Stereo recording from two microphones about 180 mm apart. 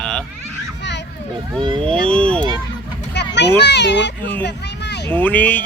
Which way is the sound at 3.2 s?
70° left (ahead or behind).